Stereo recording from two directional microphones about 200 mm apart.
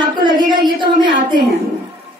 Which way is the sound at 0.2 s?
25° right (ahead or behind).